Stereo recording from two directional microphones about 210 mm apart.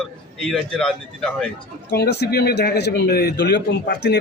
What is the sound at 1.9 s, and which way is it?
Speech, 50° left (ahead or behind).